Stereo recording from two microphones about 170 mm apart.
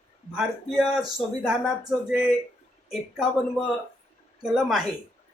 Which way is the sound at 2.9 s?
Centre (ahead or behind).